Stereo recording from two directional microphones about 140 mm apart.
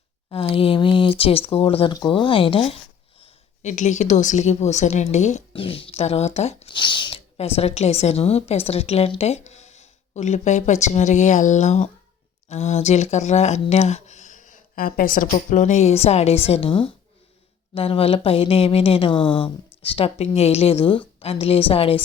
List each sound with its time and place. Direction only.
0.3 s a woman's voice: 40° left (ahead or behind); by 5.4 s 55° left (ahead or behind)
5.5 s a woman's voice: 40° left (ahead or behind)
6.7 s speech: 35° left (ahead or behind)
7.3 s a woman's voice: 45° left (ahead or behind)